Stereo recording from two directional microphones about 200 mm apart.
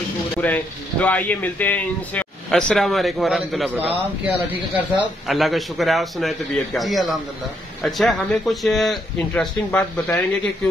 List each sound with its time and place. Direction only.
0.4 s speech: 10° left (ahead or behind)